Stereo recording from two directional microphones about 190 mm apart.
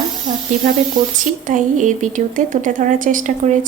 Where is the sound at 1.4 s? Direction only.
40° right (ahead or behind).